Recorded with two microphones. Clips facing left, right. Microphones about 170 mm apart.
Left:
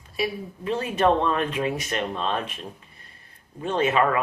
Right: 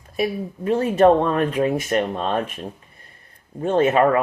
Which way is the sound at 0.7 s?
50° right (ahead or behind).